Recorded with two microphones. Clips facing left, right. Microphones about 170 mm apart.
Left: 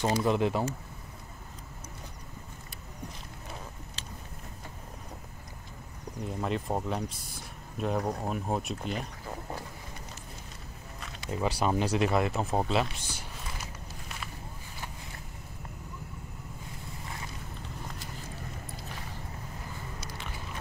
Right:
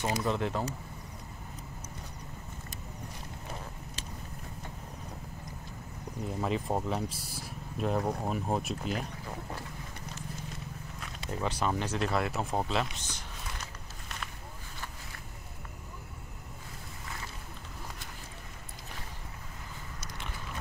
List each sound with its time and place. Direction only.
0.0 s speech: 30° left (ahead or behind)
0.3 s speech: 15° left (ahead or behind)
6.2 s speech: centre (ahead or behind)
11.0 s speech: 10° left (ahead or behind)
12.9 s a sound: 10° left (ahead or behind)